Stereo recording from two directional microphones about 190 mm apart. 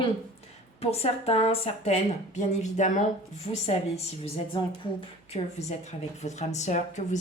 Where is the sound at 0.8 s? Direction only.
35° left (ahead or behind).